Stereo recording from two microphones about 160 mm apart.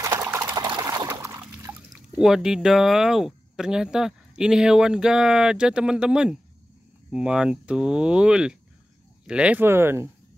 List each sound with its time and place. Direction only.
0.0 s liquid: 20° right (ahead or behind)
1.9 s speech: 5° right (ahead or behind)